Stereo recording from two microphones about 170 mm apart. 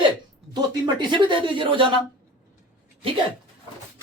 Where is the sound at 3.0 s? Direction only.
30° right (ahead or behind).